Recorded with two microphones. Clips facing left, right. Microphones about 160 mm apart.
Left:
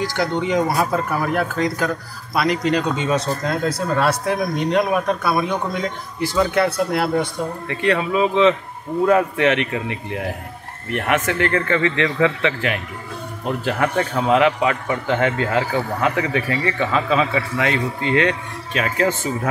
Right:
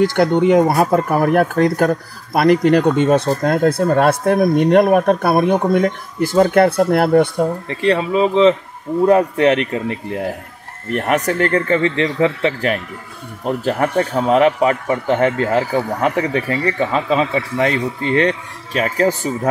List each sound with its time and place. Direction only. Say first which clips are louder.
0.0 s speech: right 8 dB; 55° right (ahead or behind)
7.6 s speech: right 3 dB; 30° right (ahead or behind)